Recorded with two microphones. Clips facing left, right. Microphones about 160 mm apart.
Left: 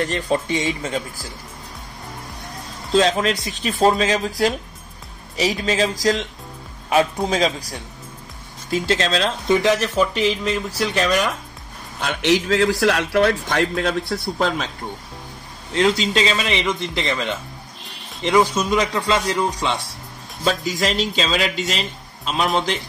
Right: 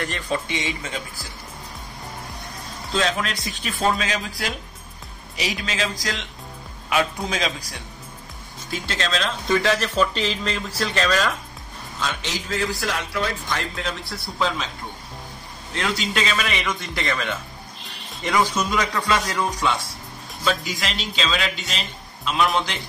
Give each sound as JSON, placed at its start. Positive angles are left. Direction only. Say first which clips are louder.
{"t": 0.0, "sound": "speech", "louder": "left 5 dB", "side_deg": 40}
{"t": 2.9, "sound": "speech", "louder": "left 7 dB", "side_deg": 35}
{"t": 8.8, "sound": "speech", "louder": "left 5 dB", "side_deg": 35}
{"t": 9.5, "sound": "speech", "louder": "left 3 dB", "side_deg": 15}
{"t": 12.0, "sound": "a man's voice", "louder": "left 10 dB", "side_deg": 65}
{"t": 15.7, "sound": "a man's voice", "louder": "left 7 dB", "side_deg": 30}
{"t": 20.4, "sound": "speech", "louder": "left 4 dB", "side_deg": 40}